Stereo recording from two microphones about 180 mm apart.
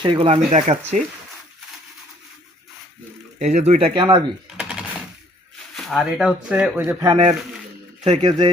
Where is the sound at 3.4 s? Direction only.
40° right (ahead or behind).